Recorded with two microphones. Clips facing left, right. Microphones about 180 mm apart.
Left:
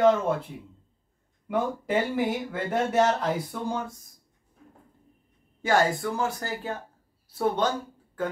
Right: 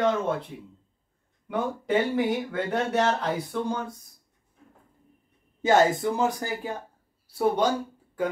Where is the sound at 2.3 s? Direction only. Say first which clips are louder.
Right 1 dB; 5° left (ahead or behind).